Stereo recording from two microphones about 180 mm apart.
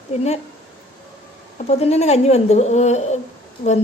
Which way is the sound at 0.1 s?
40° left (ahead or behind).